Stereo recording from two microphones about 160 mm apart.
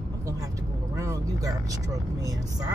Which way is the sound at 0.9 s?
20° right (ahead or behind).